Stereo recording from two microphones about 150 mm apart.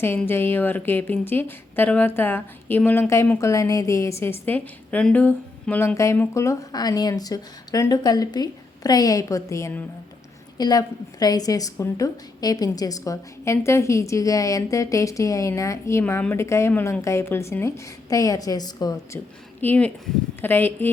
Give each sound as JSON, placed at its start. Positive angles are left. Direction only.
{"t": 0.3, "sound": "a woman's voice", "side_deg": 15}
{"t": 19.6, "sound": "speech", "side_deg": 10}